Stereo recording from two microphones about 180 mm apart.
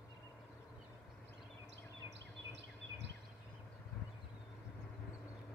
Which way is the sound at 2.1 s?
75° right (ahead or behind).